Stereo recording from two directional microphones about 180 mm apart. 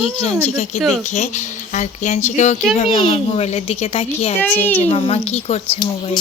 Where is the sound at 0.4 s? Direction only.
40° left (ahead or behind).